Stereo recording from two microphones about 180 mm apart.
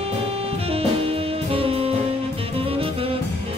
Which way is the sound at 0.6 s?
30° right (ahead or behind).